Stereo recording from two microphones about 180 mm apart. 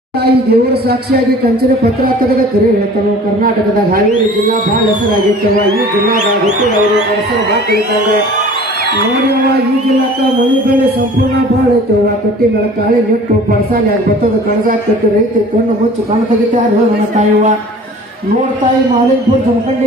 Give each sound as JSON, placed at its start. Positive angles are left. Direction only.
{"t": 0.5, "sound": "speech", "side_deg": -60}